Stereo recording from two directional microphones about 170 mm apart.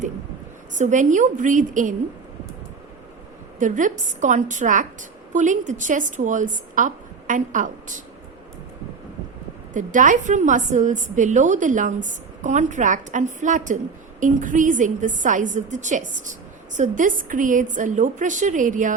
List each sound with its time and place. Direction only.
0.7 s a woman's voice: 45° right (ahead or behind)
3.6 s a woman's voice: 50° right (ahead or behind)
9.7 s a woman's voice: 50° right (ahead or behind)